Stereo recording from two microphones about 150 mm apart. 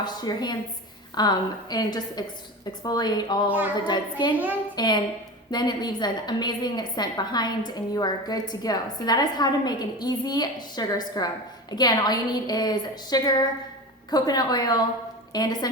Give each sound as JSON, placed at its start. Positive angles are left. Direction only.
{"t": 0.0, "sound": "a woman's voice", "side_deg": 30}